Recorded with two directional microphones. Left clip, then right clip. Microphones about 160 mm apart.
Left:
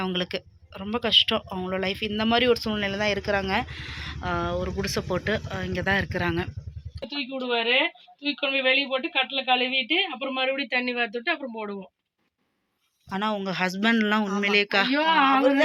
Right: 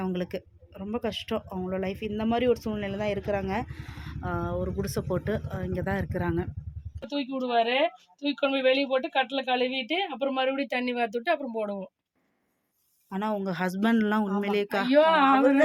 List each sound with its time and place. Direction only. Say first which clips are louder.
0.9 s speech: left 11 dB; 10° right (ahead or behind)
7.1 s speech: even; 90° right
13.1 s speech: left 3 dB; 5° right (ahead or behind)
14.9 s speech: right 2 dB; 45° right (ahead or behind)